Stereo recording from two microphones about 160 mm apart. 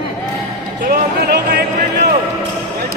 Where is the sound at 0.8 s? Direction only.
90° right.